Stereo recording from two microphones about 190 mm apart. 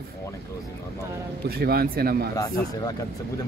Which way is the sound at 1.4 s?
55° right (ahead or behind).